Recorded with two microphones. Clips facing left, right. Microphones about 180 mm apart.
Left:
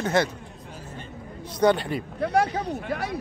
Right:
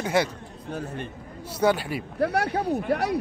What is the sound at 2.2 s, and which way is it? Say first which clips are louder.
Speech: even; 65° right (ahead or behind).